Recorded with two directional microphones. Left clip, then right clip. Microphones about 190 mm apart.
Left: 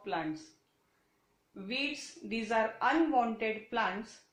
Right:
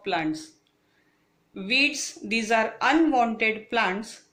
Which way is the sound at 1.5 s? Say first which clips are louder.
Right 13 dB; 35° right (ahead or behind).